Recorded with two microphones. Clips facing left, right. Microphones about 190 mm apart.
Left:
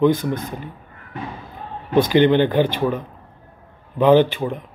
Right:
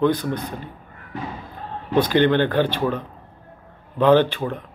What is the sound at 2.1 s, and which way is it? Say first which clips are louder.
Speech: left 3 dB; 15° left (ahead or behind).